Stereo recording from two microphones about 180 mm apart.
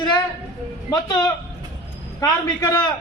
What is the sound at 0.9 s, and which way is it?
A man's voice, 20° left (ahead or behind).